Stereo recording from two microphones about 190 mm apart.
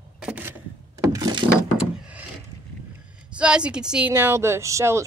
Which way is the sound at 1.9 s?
5° right (ahead or behind).